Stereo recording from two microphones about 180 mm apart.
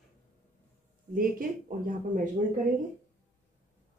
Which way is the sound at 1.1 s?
50° right (ahead or behind).